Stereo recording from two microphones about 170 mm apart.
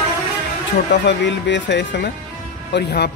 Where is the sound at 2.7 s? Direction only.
75° left (ahead or behind).